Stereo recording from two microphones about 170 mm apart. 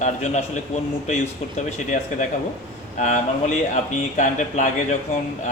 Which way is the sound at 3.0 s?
45° left (ahead or behind).